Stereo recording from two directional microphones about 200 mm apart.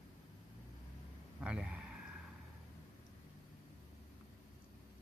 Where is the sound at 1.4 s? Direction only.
5° right (ahead or behind).